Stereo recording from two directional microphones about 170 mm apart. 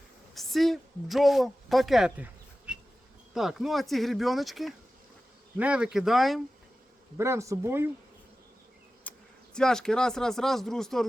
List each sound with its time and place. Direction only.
0.3 s speech: centre (ahead or behind)
7.2 s speech: 15° right (ahead or behind)
9.0 s speech: 5° left (ahead or behind)